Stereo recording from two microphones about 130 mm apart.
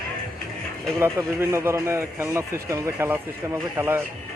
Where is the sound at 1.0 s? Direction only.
15° right (ahead or behind).